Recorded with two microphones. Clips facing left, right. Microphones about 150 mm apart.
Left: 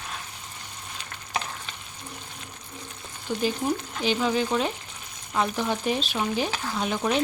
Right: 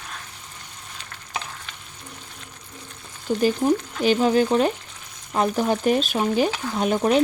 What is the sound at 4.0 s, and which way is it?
Speech, 45° right (ahead or behind).